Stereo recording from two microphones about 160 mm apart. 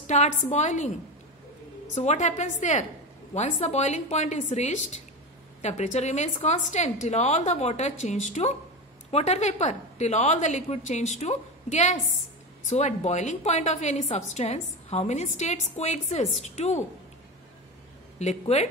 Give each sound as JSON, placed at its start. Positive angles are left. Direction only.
{"t": 0.0, "sound": "a woman's voice", "side_deg": 45}
{"t": 2.0, "sound": "a woman's voice", "side_deg": 45}
{"t": 18.2, "sound": "a woman's voice", "side_deg": 45}